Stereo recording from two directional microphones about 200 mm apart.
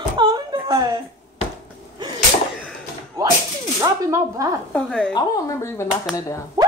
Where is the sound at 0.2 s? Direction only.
20° right (ahead or behind).